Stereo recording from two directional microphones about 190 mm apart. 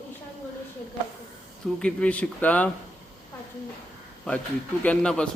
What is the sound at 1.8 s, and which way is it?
Speech, 5° left (ahead or behind).